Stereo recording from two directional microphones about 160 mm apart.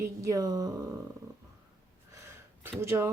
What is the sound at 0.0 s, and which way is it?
Speech, 20° right (ahead or behind).